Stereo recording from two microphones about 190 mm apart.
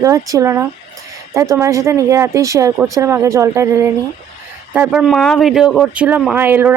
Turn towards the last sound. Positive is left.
turn(degrees=-10)  # may be behind; listen again after turning